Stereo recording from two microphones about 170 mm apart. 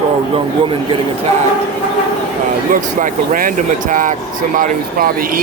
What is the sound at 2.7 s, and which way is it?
Speech, 55° right (ahead or behind).